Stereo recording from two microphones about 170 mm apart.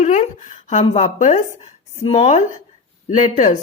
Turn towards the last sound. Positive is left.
turn(degrees=45)  # may be behind; listen again after turning